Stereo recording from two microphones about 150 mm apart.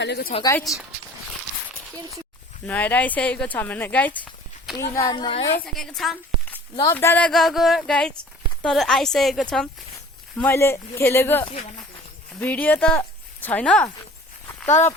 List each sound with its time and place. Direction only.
0.1 s speech: 90° left
0.6 s speech: centre (ahead or behind)
2.6 s a woman's voice: 10° left (ahead or behind)
5.1 s a woman's voice: 35° left (ahead or behind)
5.5 s speech: 5° left (ahead or behind)
6.9 s speech: 15° left (ahead or behind)
7.3 s speech: centre (ahead or behind)
10.3 s speech: 15° left (ahead or behind)
11.4 s a woman's voice: 40° left (ahead or behind)
12.4 s speech: 10° left (ahead or behind)